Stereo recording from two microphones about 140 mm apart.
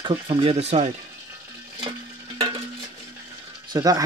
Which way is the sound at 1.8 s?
30° right (ahead or behind).